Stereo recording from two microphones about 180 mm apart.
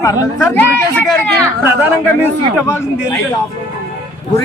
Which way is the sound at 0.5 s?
10° left (ahead or behind).